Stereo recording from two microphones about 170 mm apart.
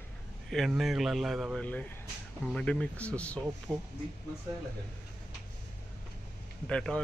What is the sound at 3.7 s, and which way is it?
Speech, 15° right (ahead or behind).